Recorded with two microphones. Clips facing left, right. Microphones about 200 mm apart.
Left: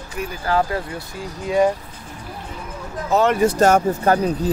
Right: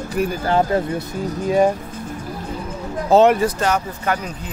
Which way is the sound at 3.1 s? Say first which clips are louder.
Right 5 dB; 30° right (ahead or behind).